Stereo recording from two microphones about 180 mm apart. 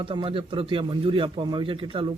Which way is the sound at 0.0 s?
30° right (ahead or behind).